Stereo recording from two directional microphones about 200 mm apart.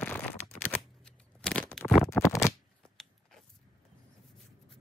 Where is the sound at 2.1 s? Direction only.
15° left (ahead or behind).